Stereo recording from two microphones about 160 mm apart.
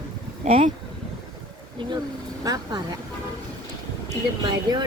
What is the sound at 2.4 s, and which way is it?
Speech, 25° right (ahead or behind).